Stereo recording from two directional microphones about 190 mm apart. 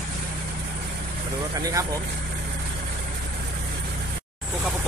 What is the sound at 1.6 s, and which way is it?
Speech, 20° right (ahead or behind).